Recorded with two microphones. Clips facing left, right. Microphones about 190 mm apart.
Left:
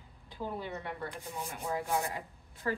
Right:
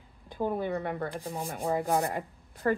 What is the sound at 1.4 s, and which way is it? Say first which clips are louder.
Rub: right 6 dB; 45° right (ahead or behind).